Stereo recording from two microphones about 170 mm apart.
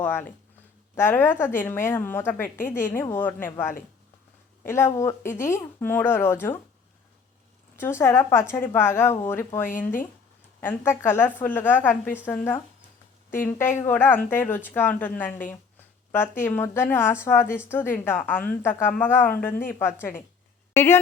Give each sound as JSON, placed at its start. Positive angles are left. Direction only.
{"t": 0.0, "sound": "a woman's voice", "side_deg": 10}
{"t": 4.6, "sound": "a woman's voice", "side_deg": 15}
{"t": 7.8, "sound": "a woman's voice", "side_deg": 15}